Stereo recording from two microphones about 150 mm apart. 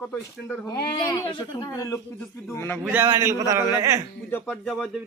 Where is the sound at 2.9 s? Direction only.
15° right (ahead or behind).